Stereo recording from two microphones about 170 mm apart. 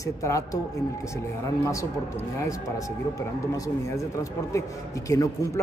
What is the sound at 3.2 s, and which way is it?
Speech, 20° left (ahead or behind).